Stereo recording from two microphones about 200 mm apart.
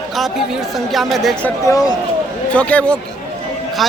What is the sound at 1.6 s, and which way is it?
Speech, 20° left (ahead or behind).